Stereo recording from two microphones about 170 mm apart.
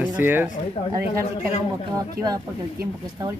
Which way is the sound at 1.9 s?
20° right (ahead or behind).